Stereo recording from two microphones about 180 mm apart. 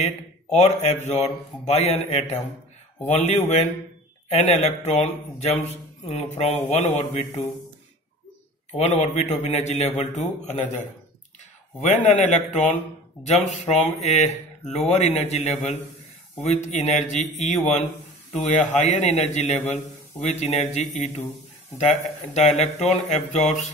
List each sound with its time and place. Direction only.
0.0 s a man's voice: 35° left (ahead or behind)
8.7 s speech: 40° left (ahead or behind)
11.8 s speech: 40° left (ahead or behind)